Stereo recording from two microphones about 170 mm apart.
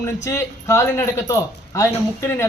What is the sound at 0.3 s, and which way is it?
A man's voice, 15° left (ahead or behind).